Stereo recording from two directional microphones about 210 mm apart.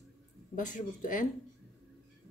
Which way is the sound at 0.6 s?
40° left (ahead or behind).